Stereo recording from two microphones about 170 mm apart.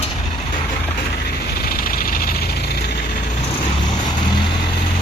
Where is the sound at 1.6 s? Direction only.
60° left (ahead or behind).